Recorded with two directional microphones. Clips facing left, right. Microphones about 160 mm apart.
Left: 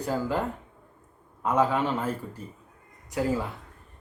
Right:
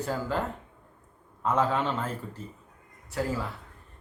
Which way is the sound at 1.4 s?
10° left (ahead or behind).